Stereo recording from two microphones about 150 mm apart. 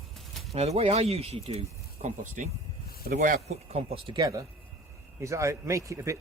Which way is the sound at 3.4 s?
45° right (ahead or behind).